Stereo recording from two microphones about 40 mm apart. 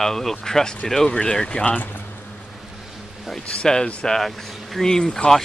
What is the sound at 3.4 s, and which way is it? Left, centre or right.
Speech, left.